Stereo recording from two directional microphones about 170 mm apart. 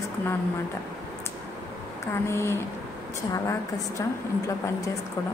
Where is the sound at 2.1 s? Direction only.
15° left (ahead or behind).